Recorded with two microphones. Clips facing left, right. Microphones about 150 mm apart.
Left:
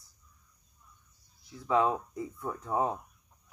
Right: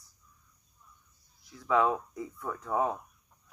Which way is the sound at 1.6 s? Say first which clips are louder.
Even; 25° left (ahead or behind).